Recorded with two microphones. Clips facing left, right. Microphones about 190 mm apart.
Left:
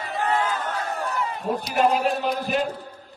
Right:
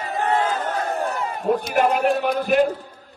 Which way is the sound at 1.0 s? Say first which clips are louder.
Right 3 dB; 50° right (ahead or behind).